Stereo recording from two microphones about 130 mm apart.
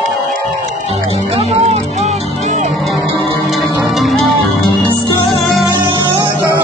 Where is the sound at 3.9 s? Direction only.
Centre (ahead or behind).